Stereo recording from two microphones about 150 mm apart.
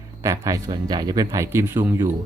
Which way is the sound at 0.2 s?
20° right (ahead or behind).